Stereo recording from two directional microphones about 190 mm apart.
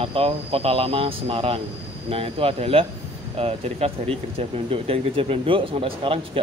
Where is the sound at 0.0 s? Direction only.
30° right (ahead or behind).